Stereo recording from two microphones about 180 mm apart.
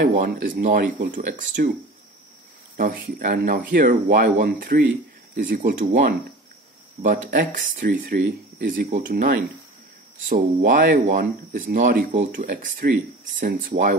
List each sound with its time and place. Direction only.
0.0 s speech: 50° right (ahead or behind)
2.8 s speech: 50° right (ahead or behind)
8.0 s speech: 60° right (ahead or behind)